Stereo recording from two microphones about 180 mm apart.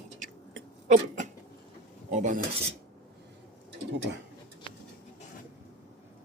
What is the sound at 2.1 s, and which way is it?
Speech, 45° right (ahead or behind).